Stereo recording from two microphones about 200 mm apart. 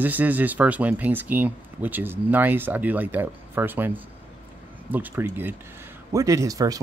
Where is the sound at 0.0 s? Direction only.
10° right (ahead or behind).